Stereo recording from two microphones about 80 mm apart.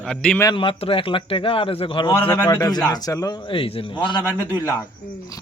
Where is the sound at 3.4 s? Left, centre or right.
Left.